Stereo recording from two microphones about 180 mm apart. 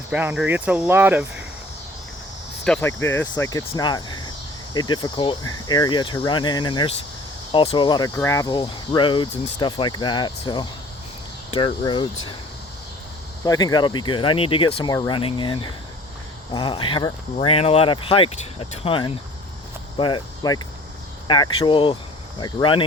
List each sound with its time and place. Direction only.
0.1 s speech: 10° right (ahead or behind)
2.6 s speech: 5° left (ahead or behind); by 12.0 s 25° left (ahead or behind)
13.4 s speech: 20° left (ahead or behind)